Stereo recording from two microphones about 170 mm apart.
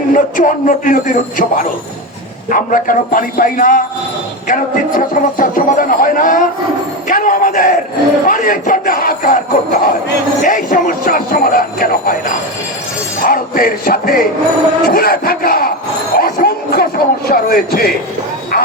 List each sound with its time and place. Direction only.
0.1 s a man's voice: 50° left (ahead or behind)
13.2 s speech: 55° left (ahead or behind)
16.1 s a sound: 60° left (ahead or behind)